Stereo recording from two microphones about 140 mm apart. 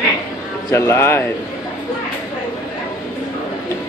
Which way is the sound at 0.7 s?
20° left (ahead or behind).